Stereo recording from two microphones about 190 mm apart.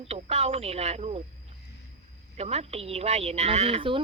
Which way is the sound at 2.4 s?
35° right (ahead or behind).